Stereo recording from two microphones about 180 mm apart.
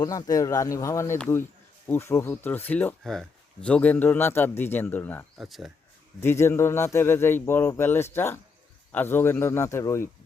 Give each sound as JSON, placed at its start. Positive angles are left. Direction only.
{"t": 0.0, "sound": "speech", "side_deg": 20}
{"t": 5.4, "sound": "speech", "side_deg": 0}
{"t": 6.1, "sound": "speech", "side_deg": 15}